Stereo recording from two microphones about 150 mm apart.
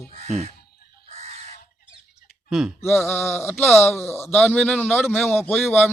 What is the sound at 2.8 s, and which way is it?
A man's voice, 15° left (ahead or behind).